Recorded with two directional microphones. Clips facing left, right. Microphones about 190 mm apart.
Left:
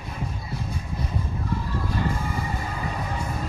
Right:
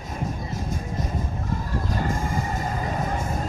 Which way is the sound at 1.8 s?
45° right (ahead or behind).